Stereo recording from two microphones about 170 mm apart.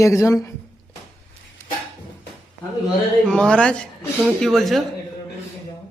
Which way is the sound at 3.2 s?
5° left (ahead or behind).